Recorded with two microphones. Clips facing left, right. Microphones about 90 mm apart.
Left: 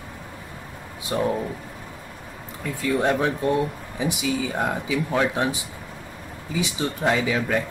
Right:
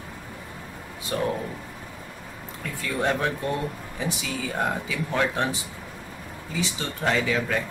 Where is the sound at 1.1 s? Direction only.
20° left (ahead or behind).